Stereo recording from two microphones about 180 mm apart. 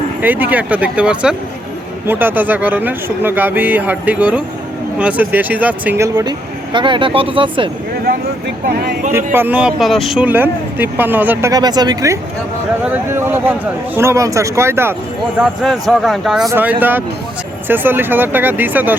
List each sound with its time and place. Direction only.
0.2 s speech: 10° right (ahead or behind); by 7.7 s 30° right (ahead or behind)
8.0 s speech: 60° right (ahead or behind)
9.1 s speech: 10° right (ahead or behind)
15.4 s speech: centre (ahead or behind)